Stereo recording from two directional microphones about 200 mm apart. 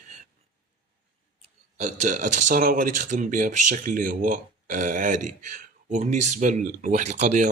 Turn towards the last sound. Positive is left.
turn(degrees=-35)  # may be behind; listen again after turning